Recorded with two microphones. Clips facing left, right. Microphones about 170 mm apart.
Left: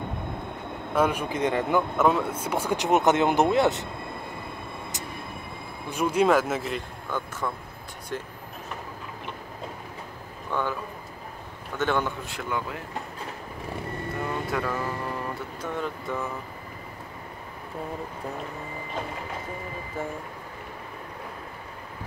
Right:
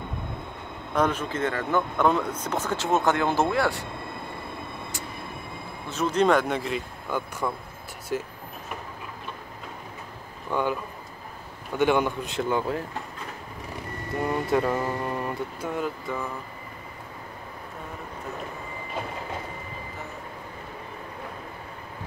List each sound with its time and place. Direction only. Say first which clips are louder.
0.9 s speech: left 1 dB; 10° left (ahead or behind)
1.8 s speech: right 1 dB; 5° left (ahead or behind); by 3.8 s 20° left (ahead or behind)
5.9 s speech: even; 10° left (ahead or behind)
7.1 s speech: right 2 dB; 10° right (ahead or behind)
10.5 s a man's voice: right 3 dB; 15° right (ahead or behind)
11.8 s a man's voice: right 4 dB; 15° right (ahead or behind); by 12.8 s 30° right (ahead or behind)
14.5 s a man's voice: right 4 dB; 25° right (ahead or behind)
15.6 s speech: even; 10° right (ahead or behind)